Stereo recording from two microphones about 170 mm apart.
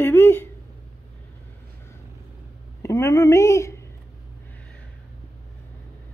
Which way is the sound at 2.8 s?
15° left (ahead or behind).